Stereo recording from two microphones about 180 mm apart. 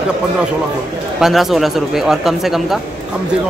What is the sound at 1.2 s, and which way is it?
Speech, centre (ahead or behind).